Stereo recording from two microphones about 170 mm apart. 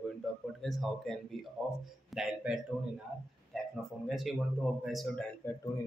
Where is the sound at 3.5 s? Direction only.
Centre (ahead or behind).